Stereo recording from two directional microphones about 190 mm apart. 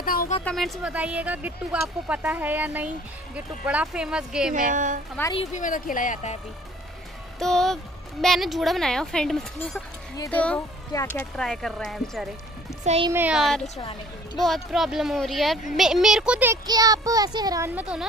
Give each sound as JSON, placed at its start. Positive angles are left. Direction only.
{"t": 0.0, "sound": "a sound", "side_deg": 50}
{"t": 0.5, "sound": "a woman's voice", "side_deg": 0}
{"t": 4.6, "sound": "a woman's voice", "side_deg": -45}
{"t": 5.3, "sound": "speech", "side_deg": 35}
{"t": 7.3, "sound": "a woman's voice", "side_deg": 0}
{"t": 12.8, "sound": "a child's voice", "side_deg": -35}
{"t": 13.1, "sound": "a woman's voice", "side_deg": -5}
{"t": 13.7, "sound": "a woman's voice", "side_deg": 25}
{"t": 14.4, "sound": "a woman's voice", "side_deg": 0}
{"t": 16.6, "sound": "a child's voice", "side_deg": -20}